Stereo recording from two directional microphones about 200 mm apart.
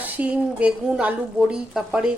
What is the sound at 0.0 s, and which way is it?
A woman's voice, 5° right (ahead or behind).